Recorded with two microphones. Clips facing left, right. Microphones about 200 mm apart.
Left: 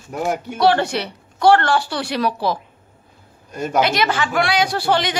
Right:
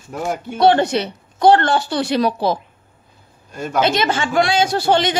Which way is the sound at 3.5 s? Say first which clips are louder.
Left 2 dB; 10° left (ahead or behind).